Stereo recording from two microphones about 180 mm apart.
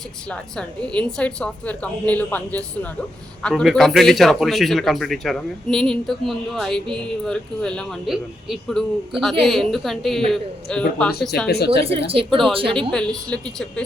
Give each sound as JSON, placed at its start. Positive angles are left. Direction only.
{"t": 0.3, "sound": "a woman's voice", "side_deg": 5}
{"t": 11.4, "sound": "a woman's voice", "side_deg": 65}
{"t": 11.9, "sound": "speech", "side_deg": -30}
{"t": 12.3, "sound": "a man's voice", "side_deg": 0}